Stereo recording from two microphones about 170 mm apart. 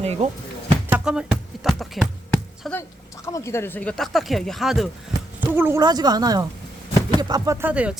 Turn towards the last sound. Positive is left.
turn(degrees=-5)  # may be behind; listen again after turning